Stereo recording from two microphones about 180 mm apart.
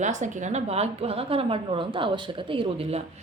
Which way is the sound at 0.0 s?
40° right (ahead or behind).